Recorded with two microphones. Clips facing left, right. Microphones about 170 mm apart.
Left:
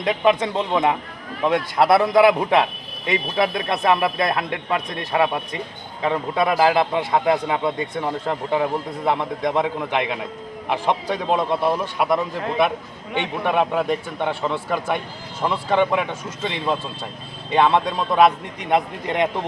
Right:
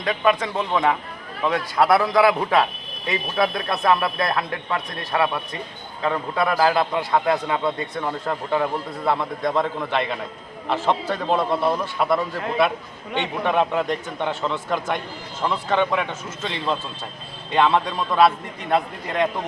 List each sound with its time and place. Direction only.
0.0 s a man's voice: 20° left (ahead or behind)